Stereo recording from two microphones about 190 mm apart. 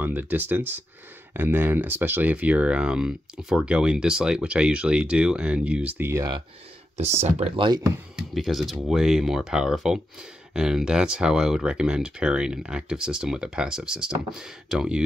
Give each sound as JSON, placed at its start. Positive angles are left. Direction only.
{"t": 0.0, "sound": "speech", "side_deg": -10}
{"t": 7.0, "sound": "speech", "side_deg": -35}
{"t": 8.2, "sound": "speech", "side_deg": 0}